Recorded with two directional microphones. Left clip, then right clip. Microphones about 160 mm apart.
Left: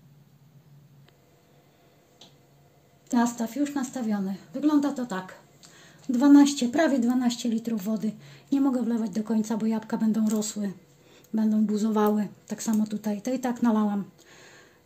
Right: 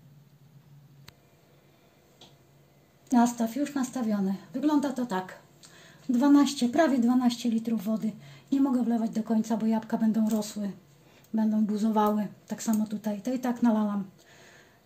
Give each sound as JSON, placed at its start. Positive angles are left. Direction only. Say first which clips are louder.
{"t": 3.1, "sound": "speech", "louder": "right 1 dB", "side_deg": 5}
{"t": 5.6, "sound": "a woman's voice", "louder": "left 1 dB", "side_deg": 20}